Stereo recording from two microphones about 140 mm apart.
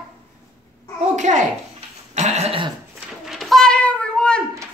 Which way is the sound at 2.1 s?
55° right (ahead or behind).